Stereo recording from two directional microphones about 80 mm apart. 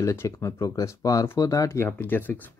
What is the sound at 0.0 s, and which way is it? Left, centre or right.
Speech, left.